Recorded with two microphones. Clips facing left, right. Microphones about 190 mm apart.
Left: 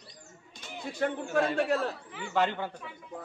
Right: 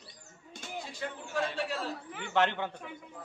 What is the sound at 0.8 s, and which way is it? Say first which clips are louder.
Speech: left 9 dB; 60° left (ahead or behind).